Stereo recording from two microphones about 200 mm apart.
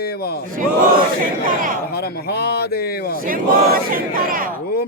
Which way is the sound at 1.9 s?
50° left (ahead or behind).